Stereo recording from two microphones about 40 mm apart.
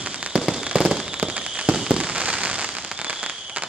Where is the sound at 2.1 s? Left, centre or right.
Right.